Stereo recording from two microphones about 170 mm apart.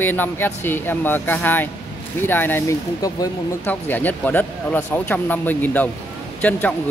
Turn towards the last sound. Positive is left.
turn(degrees=10)  # may be behind; listen again after turning